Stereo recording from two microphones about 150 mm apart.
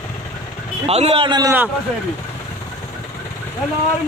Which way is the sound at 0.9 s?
40° right (ahead or behind).